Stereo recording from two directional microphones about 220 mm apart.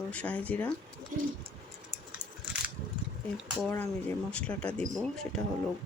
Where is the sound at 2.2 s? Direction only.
20° right (ahead or behind).